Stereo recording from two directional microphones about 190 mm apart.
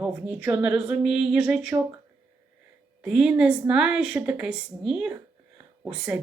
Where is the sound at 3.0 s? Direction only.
5° right (ahead or behind).